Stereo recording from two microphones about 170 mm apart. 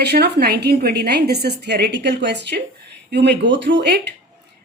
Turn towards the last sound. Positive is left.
turn(degrees=-90)